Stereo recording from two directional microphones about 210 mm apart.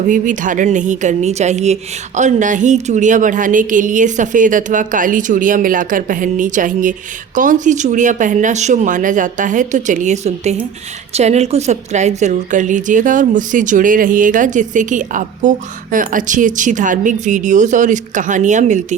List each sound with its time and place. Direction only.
0.1 s a woman's voice: 40° right (ahead or behind)